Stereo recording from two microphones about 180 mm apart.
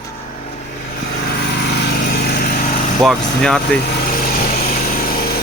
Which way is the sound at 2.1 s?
55° left (ahead or behind).